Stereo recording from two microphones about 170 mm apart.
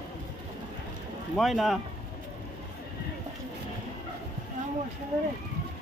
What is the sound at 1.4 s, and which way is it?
Speech, centre (ahead or behind).